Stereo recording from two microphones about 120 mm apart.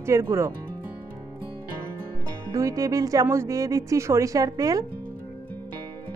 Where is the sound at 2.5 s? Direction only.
30° right (ahead or behind).